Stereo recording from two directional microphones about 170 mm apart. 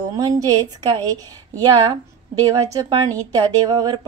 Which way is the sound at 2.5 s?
20° right (ahead or behind).